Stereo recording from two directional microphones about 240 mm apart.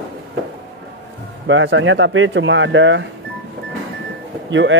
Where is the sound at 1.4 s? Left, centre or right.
Right.